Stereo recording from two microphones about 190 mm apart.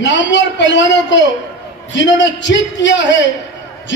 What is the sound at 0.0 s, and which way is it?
A man's voice, 70° left (ahead or behind).